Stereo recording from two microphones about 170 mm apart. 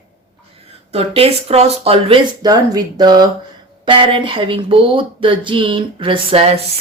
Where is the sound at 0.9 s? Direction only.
35° right (ahead or behind).